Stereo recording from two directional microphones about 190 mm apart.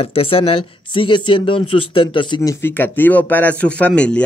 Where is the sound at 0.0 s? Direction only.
30° left (ahead or behind).